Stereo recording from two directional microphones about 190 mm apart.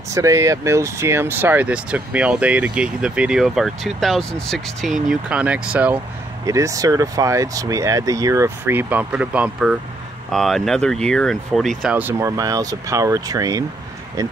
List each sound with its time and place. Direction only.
0.1 s speech: 15° right (ahead or behind)